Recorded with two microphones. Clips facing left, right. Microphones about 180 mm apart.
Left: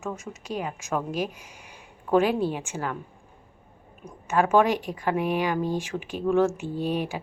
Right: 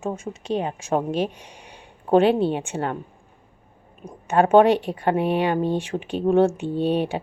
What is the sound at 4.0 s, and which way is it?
A woman's voice, 35° right (ahead or behind).